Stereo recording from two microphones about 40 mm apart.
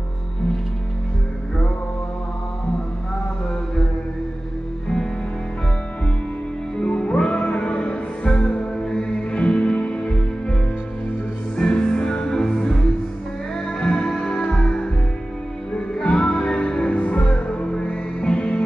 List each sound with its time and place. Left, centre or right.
6.8 s music: left
11.5 s music: centre